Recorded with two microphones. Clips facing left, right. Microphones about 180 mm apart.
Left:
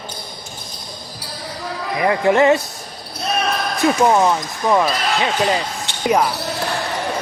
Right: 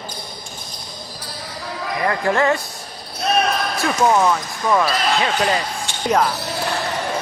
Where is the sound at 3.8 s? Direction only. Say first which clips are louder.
Left 3 dB; 20° left (ahead or behind).